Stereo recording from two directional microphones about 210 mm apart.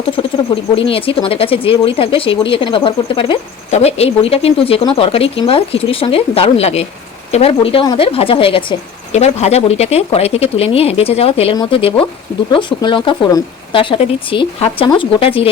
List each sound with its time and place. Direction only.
0.2 s speech: 25° left (ahead or behind)